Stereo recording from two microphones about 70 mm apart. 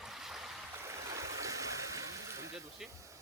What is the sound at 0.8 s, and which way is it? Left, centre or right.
Stream, right.